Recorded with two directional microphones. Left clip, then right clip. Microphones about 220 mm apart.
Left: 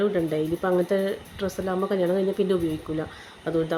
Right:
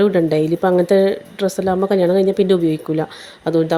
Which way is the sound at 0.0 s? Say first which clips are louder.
Right 9 dB; 40° right (ahead or behind).